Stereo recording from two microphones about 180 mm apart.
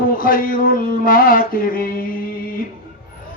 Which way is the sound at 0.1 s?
50° left (ahead or behind).